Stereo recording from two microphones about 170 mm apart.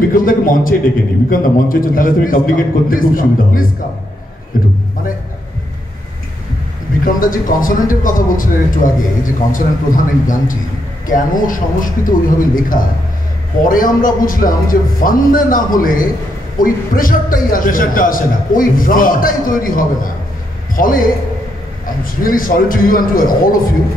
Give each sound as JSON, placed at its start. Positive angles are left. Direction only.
{"t": 0.1, "sound": "a man's voice", "side_deg": 55}
{"t": 7.1, "sound": "a man's voice", "side_deg": 55}
{"t": 22.2, "sound": "a man's voice", "side_deg": 55}